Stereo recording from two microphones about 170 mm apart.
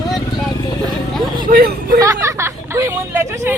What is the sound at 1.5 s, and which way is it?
Speech, 60° right (ahead or behind).